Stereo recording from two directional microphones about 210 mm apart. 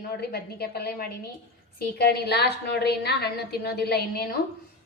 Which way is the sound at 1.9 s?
50° left (ahead or behind).